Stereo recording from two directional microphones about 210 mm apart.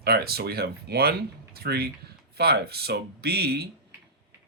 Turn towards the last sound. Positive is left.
turn(degrees=-50)  # may be behind; listen again after turning